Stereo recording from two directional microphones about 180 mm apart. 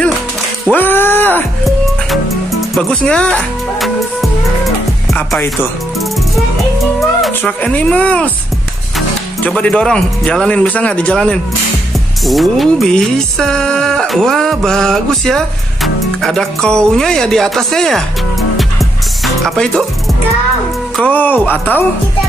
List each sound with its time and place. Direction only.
0.7 s a sound: 10° left (ahead or behind)
2.7 s music: 5° left (ahead or behind)
7.0 s speech: centre (ahead or behind)
12.3 s music: centre (ahead or behind)
20.9 s speech: 10° left (ahead or behind)